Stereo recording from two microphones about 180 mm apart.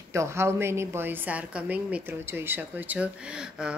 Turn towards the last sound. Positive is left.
turn(degrees=-5)  # may be behind; listen again after turning